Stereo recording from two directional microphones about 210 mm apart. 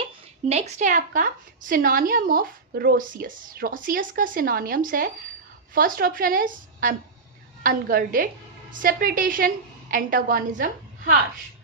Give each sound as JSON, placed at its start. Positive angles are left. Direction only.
{"t": 0.4, "sound": "a woman's voice", "side_deg": -30}